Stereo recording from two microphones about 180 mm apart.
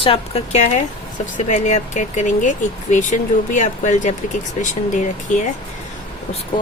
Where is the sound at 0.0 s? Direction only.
35° left (ahead or behind).